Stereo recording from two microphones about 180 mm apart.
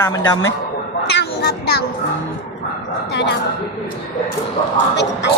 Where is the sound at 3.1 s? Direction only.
70° left (ahead or behind).